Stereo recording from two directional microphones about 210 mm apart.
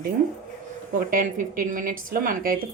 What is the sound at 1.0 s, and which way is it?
A woman's voice, 40° right (ahead or behind).